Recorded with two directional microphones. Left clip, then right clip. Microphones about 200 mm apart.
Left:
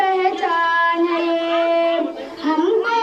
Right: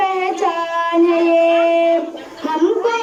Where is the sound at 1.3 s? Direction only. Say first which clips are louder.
Right 5 dB; 5° right (ahead or behind).